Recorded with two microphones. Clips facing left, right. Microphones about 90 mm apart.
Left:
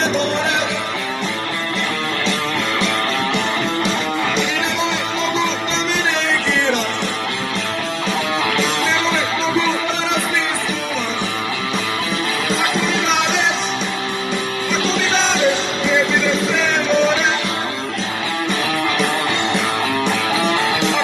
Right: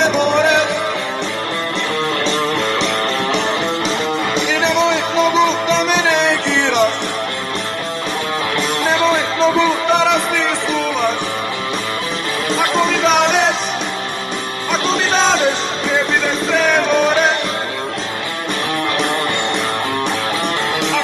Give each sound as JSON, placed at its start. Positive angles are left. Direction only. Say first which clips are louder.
{"t": 0.0, "sound": "music", "louder": "right 5 dB", "side_deg": -65}
{"t": 4.5, "sound": "music", "louder": "right 5 dB", "side_deg": -70}
{"t": 8.8, "sound": "music", "louder": "right 4 dB", "side_deg": -55}
{"t": 12.5, "sound": "music", "louder": "right 6 dB", "side_deg": -55}
{"t": 14.7, "sound": "music", "louder": "right 3 dB", "side_deg": -55}